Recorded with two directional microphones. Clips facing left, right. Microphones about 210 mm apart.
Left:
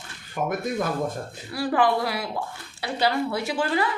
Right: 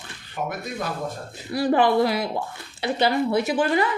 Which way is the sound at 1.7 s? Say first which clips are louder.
Right 3 dB; 25° right (ahead or behind).